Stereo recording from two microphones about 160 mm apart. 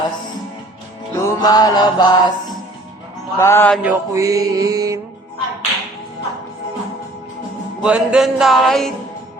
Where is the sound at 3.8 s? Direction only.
10° right (ahead or behind).